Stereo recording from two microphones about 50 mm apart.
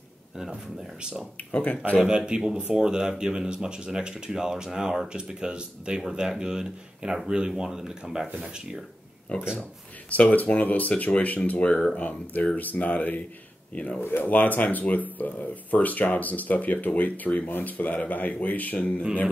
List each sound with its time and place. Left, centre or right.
1.5 s speech: left
2.0 s speech: centre
9.3 s speech: left